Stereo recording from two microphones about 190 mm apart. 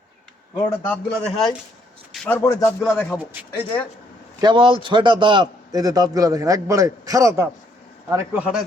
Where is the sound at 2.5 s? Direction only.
20° left (ahead or behind).